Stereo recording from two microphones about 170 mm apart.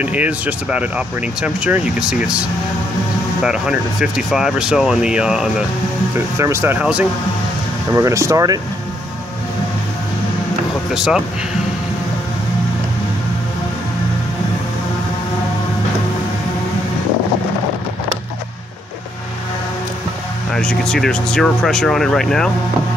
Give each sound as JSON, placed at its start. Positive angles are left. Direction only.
{"t": 0.0, "sound": "speech", "side_deg": -10}
{"t": 3.4, "sound": "speech", "side_deg": -5}
{"t": 6.1, "sound": "speech", "side_deg": -15}
{"t": 7.9, "sound": "speech", "side_deg": -15}
{"t": 10.9, "sound": "speech", "side_deg": -5}
{"t": 20.5, "sound": "speech", "side_deg": 5}